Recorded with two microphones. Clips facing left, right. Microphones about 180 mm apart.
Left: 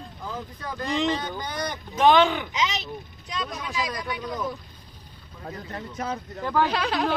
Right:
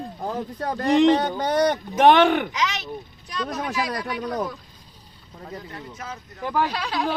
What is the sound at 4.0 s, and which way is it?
Speech, 70° right (ahead or behind).